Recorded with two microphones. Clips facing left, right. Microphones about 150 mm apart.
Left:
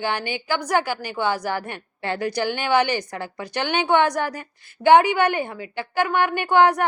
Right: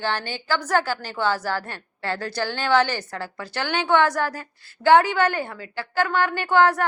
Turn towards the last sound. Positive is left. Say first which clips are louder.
# left 2 dB
turn(degrees=15)  # may be behind; listen again after turning